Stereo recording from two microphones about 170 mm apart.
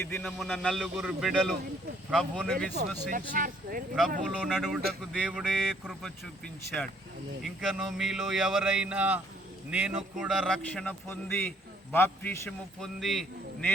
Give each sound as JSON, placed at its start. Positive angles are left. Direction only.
{"t": 0.0, "sound": "a man's voice", "side_deg": 5}
{"t": 2.7, "sound": "speech", "side_deg": -50}
{"t": 4.4, "sound": "a man's voice", "side_deg": 0}